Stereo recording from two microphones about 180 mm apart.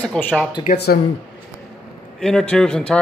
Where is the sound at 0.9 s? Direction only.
55° left (ahead or behind).